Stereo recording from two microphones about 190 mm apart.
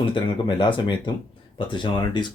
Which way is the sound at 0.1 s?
25° left (ahead or behind).